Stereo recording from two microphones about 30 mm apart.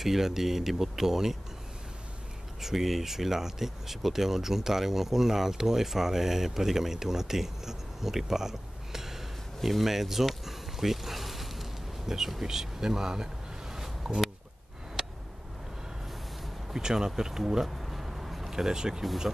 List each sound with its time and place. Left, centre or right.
0.0 s speech: centre
2.6 s speech: centre
9.6 s speech: centre
10.4 s a sound: centre
12.4 s speech: centre
16.7 s speech: right
17.1 s a sound: centre
18.5 s speech: centre